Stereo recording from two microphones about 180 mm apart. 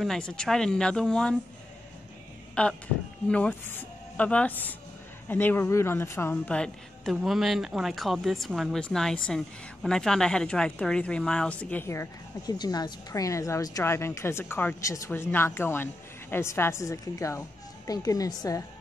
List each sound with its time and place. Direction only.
0.0 s a woman's voice: 5° left (ahead or behind)
2.6 s a woman's voice: 5° left (ahead or behind)